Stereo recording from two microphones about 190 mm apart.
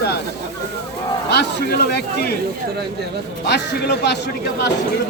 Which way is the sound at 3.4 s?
60° left (ahead or behind).